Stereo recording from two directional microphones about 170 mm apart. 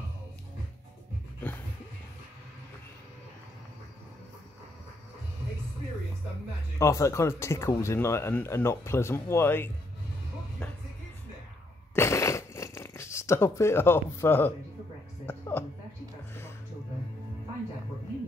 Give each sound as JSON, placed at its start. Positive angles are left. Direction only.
{"t": 6.8, "sound": "speech", "side_deg": 15}
{"t": 10.6, "sound": "music", "side_deg": 5}
{"t": 11.9, "sound": "a sound", "side_deg": 15}